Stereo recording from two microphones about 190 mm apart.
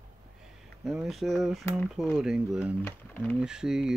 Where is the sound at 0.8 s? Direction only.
Centre (ahead or behind).